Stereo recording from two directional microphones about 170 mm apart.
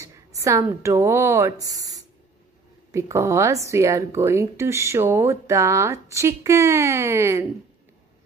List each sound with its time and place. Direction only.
0.4 s speech: 20° right (ahead or behind)